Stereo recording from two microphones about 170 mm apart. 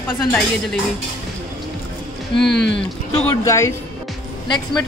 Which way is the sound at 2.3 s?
Centre (ahead or behind).